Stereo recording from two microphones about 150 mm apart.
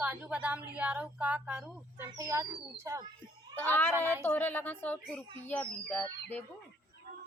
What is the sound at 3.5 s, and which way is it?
Speech, 15° left (ahead or behind).